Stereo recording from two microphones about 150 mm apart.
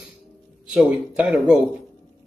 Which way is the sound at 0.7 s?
10° right (ahead or behind).